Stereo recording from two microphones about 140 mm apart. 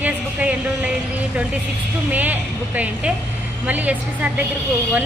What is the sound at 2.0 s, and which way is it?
A woman's voice, 10° right (ahead or behind).